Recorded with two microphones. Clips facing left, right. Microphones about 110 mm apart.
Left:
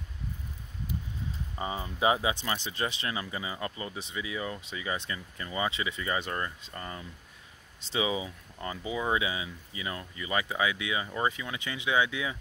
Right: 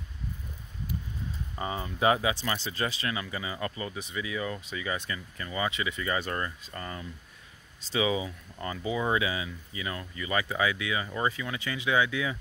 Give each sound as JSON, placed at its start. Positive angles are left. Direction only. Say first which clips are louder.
{"t": 1.6, "sound": "speech", "louder": "right 1 dB", "side_deg": 20}